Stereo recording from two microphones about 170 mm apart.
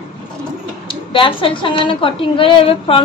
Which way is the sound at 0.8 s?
30° left (ahead or behind).